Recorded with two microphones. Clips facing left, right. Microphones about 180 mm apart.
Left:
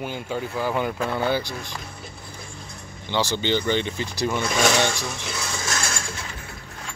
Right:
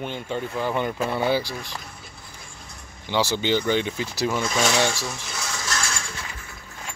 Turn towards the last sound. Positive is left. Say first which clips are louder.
# left 1 dB
turn(degrees=50)  # may be behind; listen again after turning